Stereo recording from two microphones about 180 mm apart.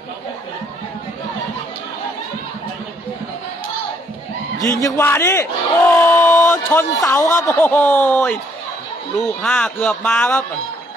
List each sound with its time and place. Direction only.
4.6 s a man's voice: 20° right (ahead or behind)
4.8 s a man's voice: 15° left (ahead or behind)
6.0 s a sound: 15° left (ahead or behind)
7.1 s a man's voice: 15° left (ahead or behind)
9.4 s a man's voice: 10° left (ahead or behind)